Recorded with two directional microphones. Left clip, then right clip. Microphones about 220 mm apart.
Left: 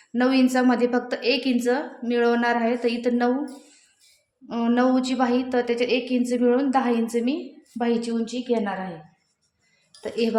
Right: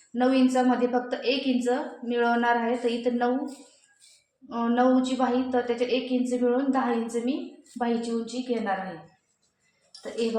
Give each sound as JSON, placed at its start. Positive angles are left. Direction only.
{"t": 0.1, "sound": "a woman's voice", "side_deg": 55}
{"t": 4.4, "sound": "a woman's voice", "side_deg": 55}